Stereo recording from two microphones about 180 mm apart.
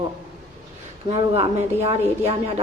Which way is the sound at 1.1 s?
35° right (ahead or behind).